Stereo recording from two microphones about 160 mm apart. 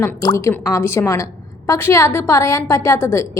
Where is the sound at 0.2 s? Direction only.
20° left (ahead or behind).